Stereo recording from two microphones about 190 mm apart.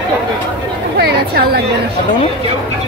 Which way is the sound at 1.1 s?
55° right (ahead or behind).